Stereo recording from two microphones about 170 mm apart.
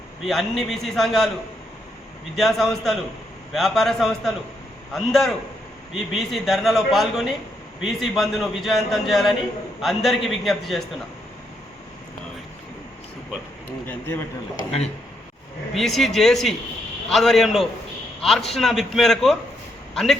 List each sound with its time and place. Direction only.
0.2 s a man's voice: centre (ahead or behind)
2.3 s a man's voice: centre (ahead or behind)
15.7 s a man's voice: centre (ahead or behind)